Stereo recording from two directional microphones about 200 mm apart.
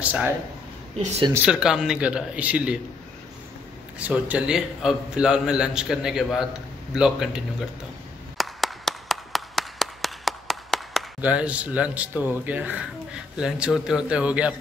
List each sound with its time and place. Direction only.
0.0 s speech: 5° right (ahead or behind)
0.9 s speech: 30° right (ahead or behind)
1.3 s a man's voice: 5° right (ahead or behind)
4.0 s a man's voice: 5° right (ahead or behind)
8.4 s clapping: centre (ahead or behind)